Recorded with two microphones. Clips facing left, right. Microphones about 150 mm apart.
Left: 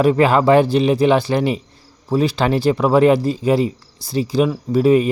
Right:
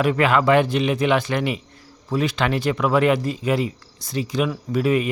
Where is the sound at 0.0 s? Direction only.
35° left (ahead or behind).